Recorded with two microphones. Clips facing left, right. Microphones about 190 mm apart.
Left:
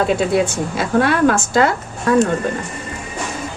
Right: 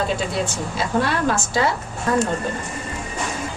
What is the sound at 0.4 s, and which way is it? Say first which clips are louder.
A woman's voice: left 4 dB; 55° left (ahead or behind).